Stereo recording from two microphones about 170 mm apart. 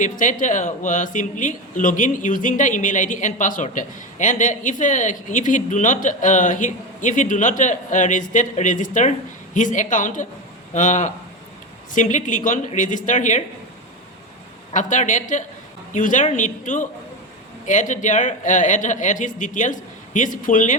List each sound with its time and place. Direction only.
0.0 s a man's voice: 50° left (ahead or behind)
14.7 s a man's voice: 45° left (ahead or behind)